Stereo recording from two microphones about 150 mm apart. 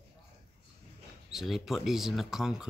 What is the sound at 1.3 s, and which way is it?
Speech, centre (ahead or behind).